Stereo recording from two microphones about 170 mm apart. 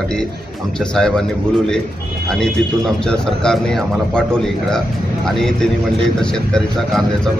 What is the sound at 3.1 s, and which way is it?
Speech, 5° left (ahead or behind).